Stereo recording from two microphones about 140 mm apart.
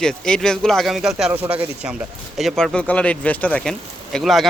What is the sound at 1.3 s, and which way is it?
Speech, 15° right (ahead or behind).